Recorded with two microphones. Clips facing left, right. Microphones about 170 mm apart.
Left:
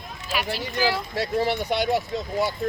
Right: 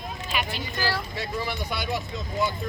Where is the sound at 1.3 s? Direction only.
75° left (ahead or behind).